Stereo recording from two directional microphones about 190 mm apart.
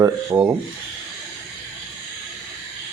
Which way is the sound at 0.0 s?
15° right (ahead or behind).